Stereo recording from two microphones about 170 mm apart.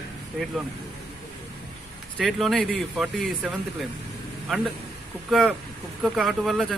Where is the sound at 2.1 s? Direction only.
Centre (ahead or behind).